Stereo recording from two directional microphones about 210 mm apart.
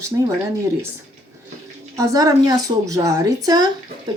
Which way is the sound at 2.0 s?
15° right (ahead or behind).